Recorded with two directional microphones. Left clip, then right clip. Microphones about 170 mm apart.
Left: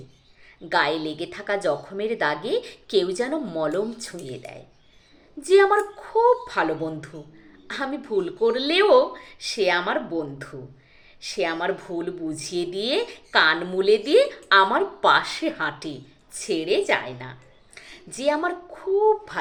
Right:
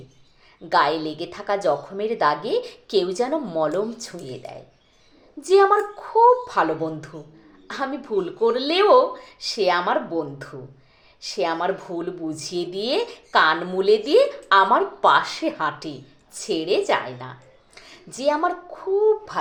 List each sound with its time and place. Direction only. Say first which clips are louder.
0.7 s speech: right 3 dB; 15° left (ahead or behind)
5.4 s speech: right 1 dB; 15° left (ahead or behind)
17.7 s a sound: right 1 dB; 15° left (ahead or behind)
19.0 s a child's voice: right 1 dB; 20° left (ahead or behind)